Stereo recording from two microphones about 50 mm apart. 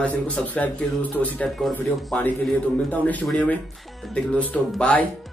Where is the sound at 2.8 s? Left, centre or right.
Left.